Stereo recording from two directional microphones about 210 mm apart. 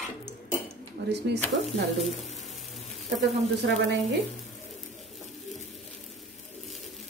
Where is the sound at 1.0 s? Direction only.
55° right (ahead or behind).